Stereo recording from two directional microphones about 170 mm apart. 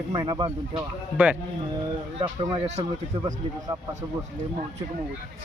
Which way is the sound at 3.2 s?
20° right (ahead or behind).